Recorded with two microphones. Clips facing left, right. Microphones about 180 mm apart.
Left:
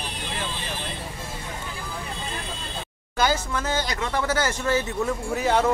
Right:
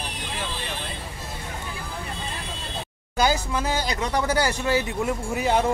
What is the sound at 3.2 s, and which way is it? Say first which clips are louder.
Speech: right 1 dB; 15° right (ahead or behind).